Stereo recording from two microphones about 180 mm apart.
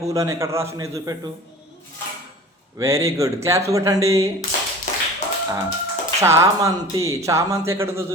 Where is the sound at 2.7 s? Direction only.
15° right (ahead or behind).